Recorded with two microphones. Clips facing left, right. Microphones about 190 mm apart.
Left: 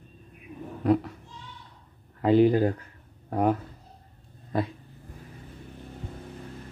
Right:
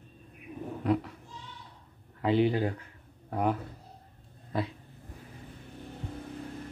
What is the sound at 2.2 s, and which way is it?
Speech, 45° left (ahead or behind).